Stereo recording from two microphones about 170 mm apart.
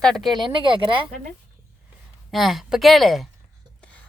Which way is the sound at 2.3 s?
Centre (ahead or behind).